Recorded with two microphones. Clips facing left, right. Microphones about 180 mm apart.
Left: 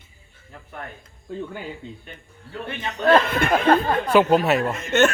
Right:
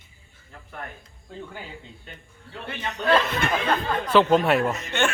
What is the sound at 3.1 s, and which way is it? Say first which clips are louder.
Speech: left 5 dB; 50° left (ahead or behind).